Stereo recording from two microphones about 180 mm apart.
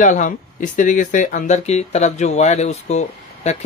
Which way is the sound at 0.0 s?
45° left (ahead or behind).